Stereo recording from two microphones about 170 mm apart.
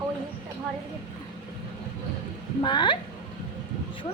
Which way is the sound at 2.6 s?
30° left (ahead or behind).